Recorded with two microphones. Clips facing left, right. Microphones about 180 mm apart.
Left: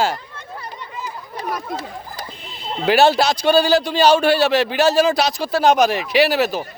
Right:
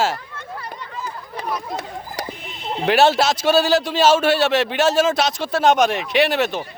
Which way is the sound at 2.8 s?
Centre (ahead or behind).